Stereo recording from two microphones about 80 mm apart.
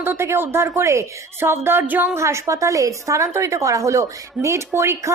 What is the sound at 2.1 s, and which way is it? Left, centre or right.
A woman's voice, right.